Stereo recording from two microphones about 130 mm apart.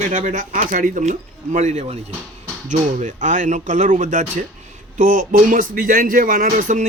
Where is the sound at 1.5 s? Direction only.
65° right (ahead or behind).